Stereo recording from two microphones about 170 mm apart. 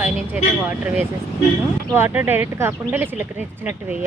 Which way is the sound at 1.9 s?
15° right (ahead or behind).